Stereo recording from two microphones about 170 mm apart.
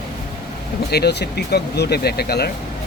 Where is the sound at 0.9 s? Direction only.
70° left (ahead or behind).